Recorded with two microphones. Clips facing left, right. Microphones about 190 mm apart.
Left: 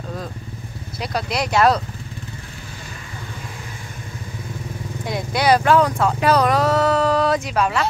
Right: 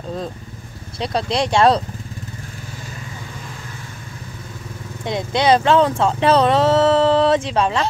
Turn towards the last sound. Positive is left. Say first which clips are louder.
# right 2 dB
turn(degrees=-30)  # may be behind; listen again after turning